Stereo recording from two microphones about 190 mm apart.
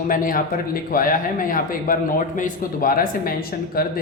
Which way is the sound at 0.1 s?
50° left (ahead or behind).